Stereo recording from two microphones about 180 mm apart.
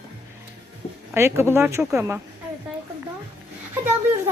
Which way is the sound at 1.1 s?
15° right (ahead or behind).